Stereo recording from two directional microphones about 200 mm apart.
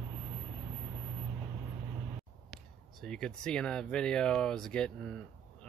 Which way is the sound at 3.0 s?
5° left (ahead or behind).